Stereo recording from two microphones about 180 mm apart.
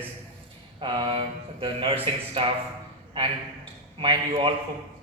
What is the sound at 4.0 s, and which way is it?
Speech, 30° right (ahead or behind).